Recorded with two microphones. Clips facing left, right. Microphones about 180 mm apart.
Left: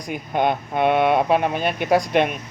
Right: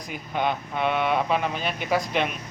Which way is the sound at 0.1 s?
50° left (ahead or behind).